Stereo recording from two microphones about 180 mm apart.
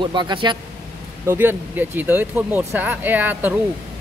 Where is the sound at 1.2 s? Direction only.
15° right (ahead or behind).